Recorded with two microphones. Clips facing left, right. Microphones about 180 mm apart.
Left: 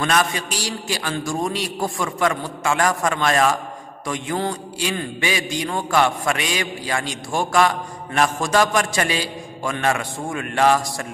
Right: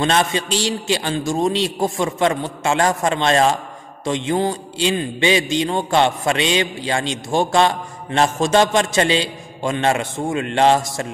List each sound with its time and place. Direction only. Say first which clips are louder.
0.0 s a man's voice: right 3 dB; 25° right (ahead or behind)